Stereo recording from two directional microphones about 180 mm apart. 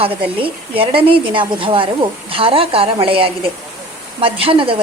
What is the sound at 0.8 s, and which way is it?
A woman's voice, 30° right (ahead or behind).